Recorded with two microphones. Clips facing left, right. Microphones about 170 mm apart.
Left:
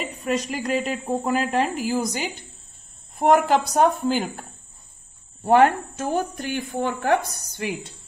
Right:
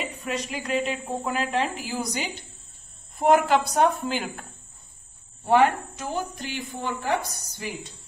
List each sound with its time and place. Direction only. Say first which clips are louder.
0.2 s speech: left 5 dB; 40° left (ahead or behind)
5.4 s speech: left 3 dB; 45° left (ahead or behind); by 7.7 s 65° left (ahead or behind)